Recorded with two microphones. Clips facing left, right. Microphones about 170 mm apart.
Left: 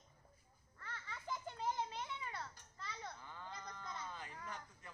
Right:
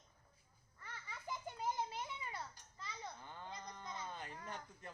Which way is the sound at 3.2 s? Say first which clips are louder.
Right 1 dB; 25° right (ahead or behind).